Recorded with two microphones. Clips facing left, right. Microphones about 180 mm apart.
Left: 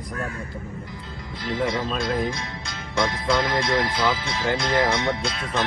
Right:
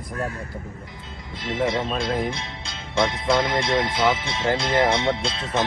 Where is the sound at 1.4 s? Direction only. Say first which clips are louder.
Right 1 dB; 25° right (ahead or behind).